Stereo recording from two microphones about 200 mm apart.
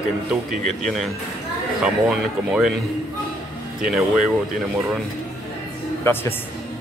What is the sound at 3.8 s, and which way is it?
Speech, 5° right (ahead or behind).